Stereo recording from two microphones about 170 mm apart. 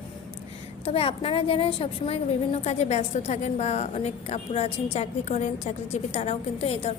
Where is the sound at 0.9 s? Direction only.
35° left (ahead or behind).